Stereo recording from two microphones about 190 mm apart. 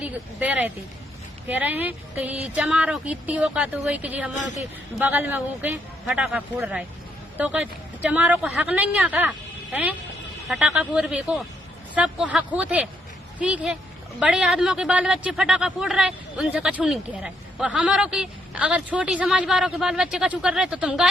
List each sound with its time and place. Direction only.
0.0 s a woman's voice: 10° right (ahead or behind)
10.5 s a woman's voice: centre (ahead or behind)